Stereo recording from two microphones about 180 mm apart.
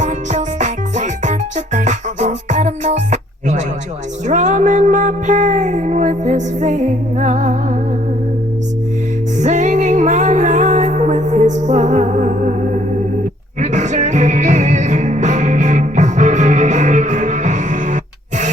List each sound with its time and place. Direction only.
0.0 s music: 40° right (ahead or behind)
4.3 s a sound: 45° right (ahead or behind)
9.4 s music: 40° right (ahead or behind)
13.6 s music: 40° right (ahead or behind)